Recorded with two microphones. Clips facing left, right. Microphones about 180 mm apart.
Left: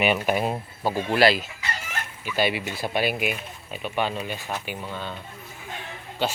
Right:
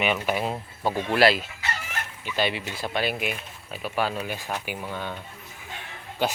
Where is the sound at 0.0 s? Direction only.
15° left (ahead or behind); by 5.1 s 10° right (ahead or behind).